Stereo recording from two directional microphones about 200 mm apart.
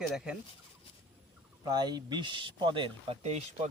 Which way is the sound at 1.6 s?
20° right (ahead or behind).